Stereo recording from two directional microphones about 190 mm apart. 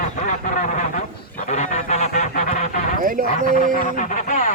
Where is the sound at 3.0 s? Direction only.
45° right (ahead or behind).